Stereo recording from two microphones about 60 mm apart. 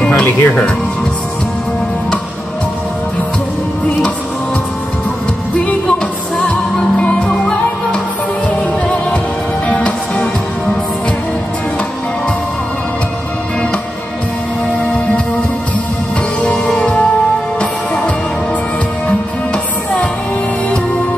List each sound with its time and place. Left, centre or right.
0.2 s speech: left
7.2 s music: centre
9.7 s music: left
16.4 s music: centre
19.5 s music: left